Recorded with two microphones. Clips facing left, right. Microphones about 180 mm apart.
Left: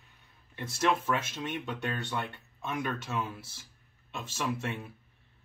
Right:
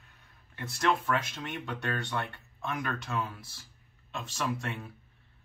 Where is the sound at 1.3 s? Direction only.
Centre (ahead or behind).